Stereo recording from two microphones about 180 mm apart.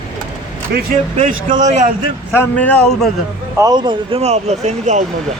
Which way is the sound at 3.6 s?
25° right (ahead or behind).